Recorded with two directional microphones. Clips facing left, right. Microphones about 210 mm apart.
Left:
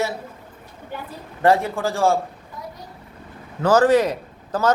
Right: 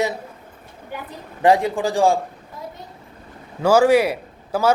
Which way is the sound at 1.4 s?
15° right (ahead or behind).